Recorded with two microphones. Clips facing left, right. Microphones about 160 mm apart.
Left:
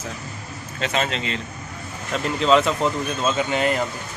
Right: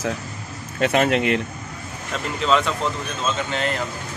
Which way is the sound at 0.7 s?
55° right (ahead or behind).